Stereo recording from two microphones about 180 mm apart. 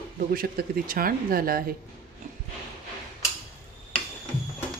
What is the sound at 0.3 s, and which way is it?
Speech, 55° right (ahead or behind).